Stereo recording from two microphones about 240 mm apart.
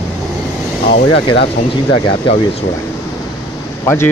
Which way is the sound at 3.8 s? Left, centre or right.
Centre.